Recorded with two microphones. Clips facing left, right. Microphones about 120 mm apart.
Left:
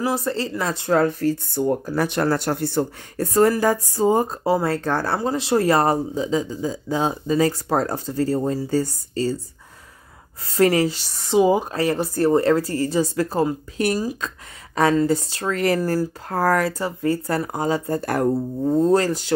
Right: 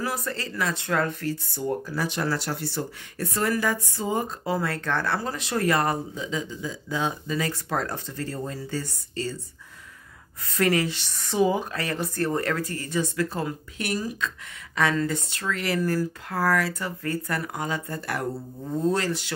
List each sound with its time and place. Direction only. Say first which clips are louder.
0.0 s speech: left 7 dB; 30° left (ahead or behind)
1.5 s speech: left 7 dB; 55° left (ahead or behind); by 9.4 s 35° left (ahead or behind)
10.4 s speech: left 6 dB; 30° left (ahead or behind)
16.8 s speech: left 7 dB; 30° left (ahead or behind)